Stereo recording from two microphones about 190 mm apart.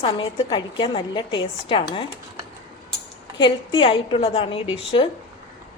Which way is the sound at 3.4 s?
25° left (ahead or behind).